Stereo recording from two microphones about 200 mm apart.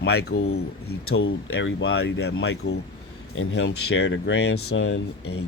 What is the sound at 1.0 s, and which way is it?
Speech, 90° left.